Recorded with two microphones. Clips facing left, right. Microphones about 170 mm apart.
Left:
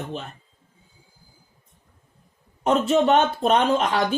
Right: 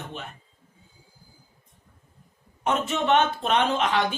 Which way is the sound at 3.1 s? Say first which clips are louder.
Left 3 dB; 40° left (ahead or behind).